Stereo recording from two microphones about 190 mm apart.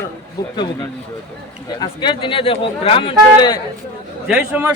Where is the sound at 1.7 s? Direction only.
25° left (ahead or behind).